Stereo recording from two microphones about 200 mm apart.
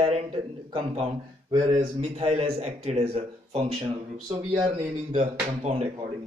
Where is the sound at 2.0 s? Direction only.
35° right (ahead or behind).